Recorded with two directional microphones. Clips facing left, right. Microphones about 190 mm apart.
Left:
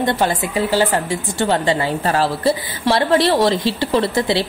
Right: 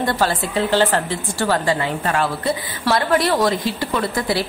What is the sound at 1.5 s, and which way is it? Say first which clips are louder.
A woman's voice: left 2 dB; 30° left (ahead or behind).